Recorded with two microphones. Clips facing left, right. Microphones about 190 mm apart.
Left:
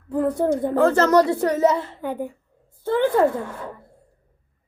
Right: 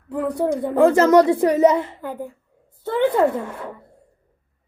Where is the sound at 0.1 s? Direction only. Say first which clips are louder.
Left 1 dB; centre (ahead or behind).